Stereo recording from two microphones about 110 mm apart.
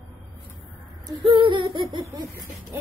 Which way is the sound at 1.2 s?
50° right (ahead or behind).